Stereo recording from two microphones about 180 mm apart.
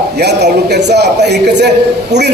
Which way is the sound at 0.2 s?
65° right (ahead or behind).